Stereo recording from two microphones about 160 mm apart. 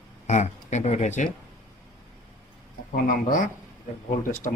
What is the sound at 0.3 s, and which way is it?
Speech, 45° left (ahead or behind).